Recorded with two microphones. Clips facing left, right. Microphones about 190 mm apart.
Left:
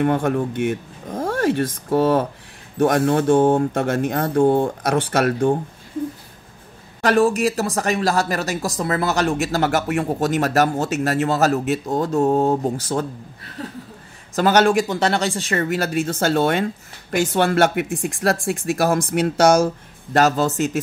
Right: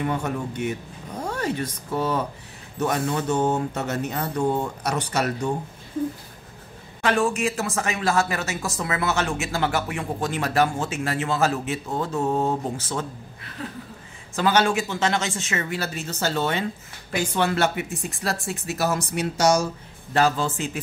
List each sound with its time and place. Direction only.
0.0 s speech: 55° left (ahead or behind)
0.6 s vehicle: 50° left (ahead or behind)
1.3 s a sound: 50° left (ahead or behind)
1.9 s speech: 50° left (ahead or behind)
7.0 s speech: 40° left (ahead or behind)
14.3 s speech: 45° left (ahead or behind)
18.2 s speech: 65° left (ahead or behind)
18.7 s speech: 50° left (ahead or behind)